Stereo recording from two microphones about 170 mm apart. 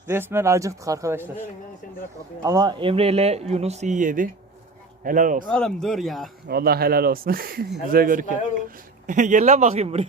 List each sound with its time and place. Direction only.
0.1 s speech: 15° right (ahead or behind)
2.4 s speech: 20° right (ahead or behind); by 5.5 s 50° right (ahead or behind)
5.5 s speech: 5° left (ahead or behind)
6.5 s speech: 65° right (ahead or behind); by 10.1 s 40° right (ahead or behind)